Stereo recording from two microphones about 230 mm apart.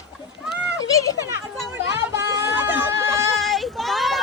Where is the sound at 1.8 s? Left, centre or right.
Centre.